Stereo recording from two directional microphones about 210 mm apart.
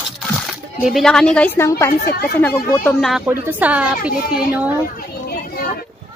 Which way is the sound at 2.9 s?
Centre (ahead or behind).